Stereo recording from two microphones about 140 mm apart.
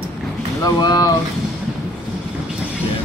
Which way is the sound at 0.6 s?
30° left (ahead or behind).